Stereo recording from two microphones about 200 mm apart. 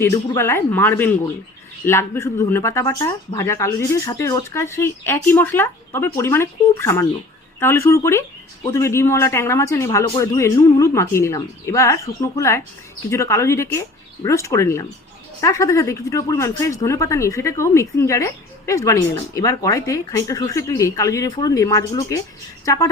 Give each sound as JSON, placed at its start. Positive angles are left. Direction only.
{"t": 0.0, "sound": "a woman's voice", "side_deg": 15}